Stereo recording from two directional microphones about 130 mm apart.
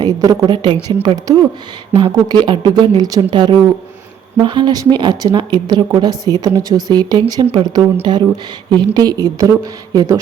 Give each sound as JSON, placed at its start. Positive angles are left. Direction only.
{"t": 0.0, "sound": "a woman's voice", "side_deg": -35}